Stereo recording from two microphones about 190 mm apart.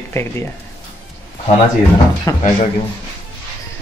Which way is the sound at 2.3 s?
15° left (ahead or behind).